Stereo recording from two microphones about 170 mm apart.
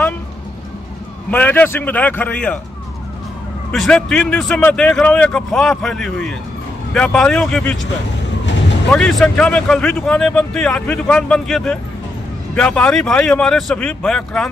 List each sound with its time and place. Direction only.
1.3 s a man's voice: 10° left (ahead or behind)
3.7 s speech: 5° left (ahead or behind)
8.9 s speech: 5° left (ahead or behind)